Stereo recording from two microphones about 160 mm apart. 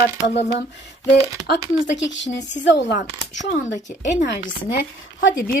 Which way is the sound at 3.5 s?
50° left (ahead or behind).